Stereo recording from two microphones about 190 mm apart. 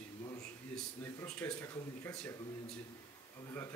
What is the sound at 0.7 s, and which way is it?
Speech, 5° left (ahead or behind).